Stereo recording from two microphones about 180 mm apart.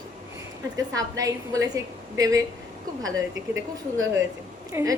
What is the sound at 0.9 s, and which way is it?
A woman's voice, 20° right (ahead or behind).